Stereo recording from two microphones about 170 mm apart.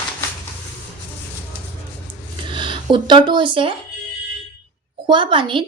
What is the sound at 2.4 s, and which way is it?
Speech, 30° right (ahead or behind).